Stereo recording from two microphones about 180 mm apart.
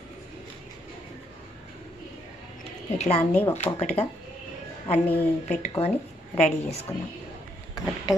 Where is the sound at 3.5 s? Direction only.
35° left (ahead or behind).